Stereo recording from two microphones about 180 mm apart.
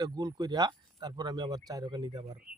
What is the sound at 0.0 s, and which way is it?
Speech, 20° right (ahead or behind).